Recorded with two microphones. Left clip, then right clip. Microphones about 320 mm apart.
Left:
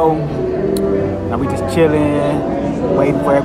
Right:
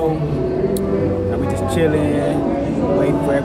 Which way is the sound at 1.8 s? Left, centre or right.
Centre.